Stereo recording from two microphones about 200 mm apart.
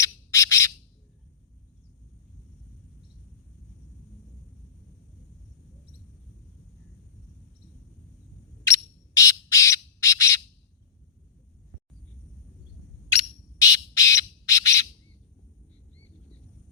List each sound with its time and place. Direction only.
0.0 s bird: 15° left (ahead or behind)
8.6 s bird: 15° left (ahead or behind)
13.1 s bird: 15° left (ahead or behind)